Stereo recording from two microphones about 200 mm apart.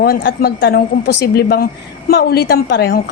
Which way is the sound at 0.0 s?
50° left (ahead or behind).